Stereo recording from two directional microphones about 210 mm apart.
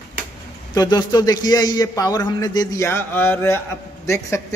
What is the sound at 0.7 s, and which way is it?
A man's voice, 20° left (ahead or behind).